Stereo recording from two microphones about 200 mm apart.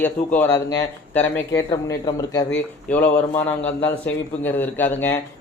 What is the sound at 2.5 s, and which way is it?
A man's voice, 10° left (ahead or behind).